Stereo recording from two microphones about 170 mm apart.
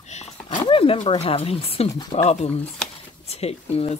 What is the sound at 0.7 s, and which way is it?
Speech, 30° left (ahead or behind).